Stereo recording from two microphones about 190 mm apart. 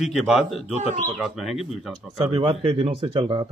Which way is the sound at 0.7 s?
40° right (ahead or behind).